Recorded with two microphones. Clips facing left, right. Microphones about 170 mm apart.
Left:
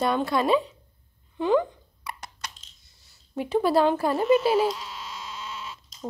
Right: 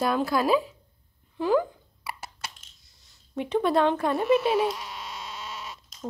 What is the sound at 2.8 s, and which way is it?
Speech, centre (ahead or behind).